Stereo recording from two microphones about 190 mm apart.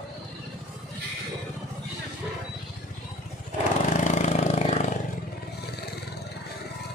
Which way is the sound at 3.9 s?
40° left (ahead or behind).